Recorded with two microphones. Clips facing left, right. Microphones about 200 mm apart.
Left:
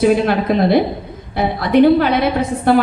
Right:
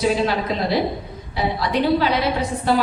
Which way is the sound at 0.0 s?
55° left (ahead or behind).